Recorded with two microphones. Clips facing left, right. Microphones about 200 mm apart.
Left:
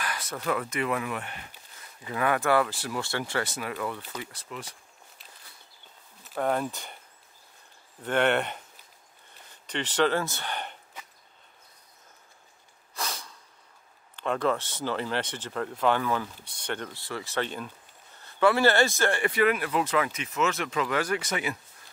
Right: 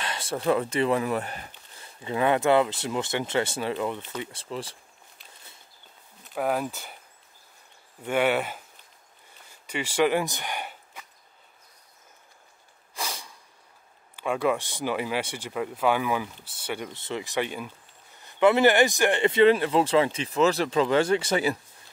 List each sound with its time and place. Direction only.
0.0 s speech: 25° right (ahead or behind)
1.8 s speech: 25° right (ahead or behind)
6.2 s speech: 5° right (ahead or behind)
8.0 s speech: 10° right (ahead or behind)
9.7 s speech: 10° right (ahead or behind)
12.9 s snort: 10° right (ahead or behind)
14.1 s speech: 10° right (ahead or behind)
16.9 s speech: 20° right (ahead or behind)